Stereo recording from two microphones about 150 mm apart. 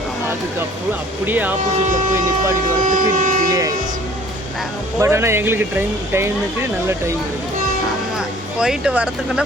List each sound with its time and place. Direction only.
1.3 s speech: 10° right (ahead or behind)
2.8 s speech: 60° right (ahead or behind)
4.9 s speech: 20° right (ahead or behind)
8.5 s speech: 5° right (ahead or behind)